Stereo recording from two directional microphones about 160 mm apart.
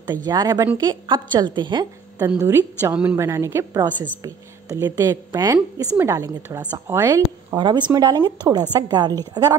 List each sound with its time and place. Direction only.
0.0 s speech: 25° right (ahead or behind)
2.1 s a woman's voice: 15° right (ahead or behind)